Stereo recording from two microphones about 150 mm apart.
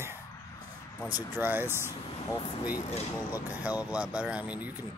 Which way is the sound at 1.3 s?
15° right (ahead or behind).